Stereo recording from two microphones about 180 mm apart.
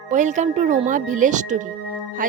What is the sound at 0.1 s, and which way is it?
Speech, 40° right (ahead or behind).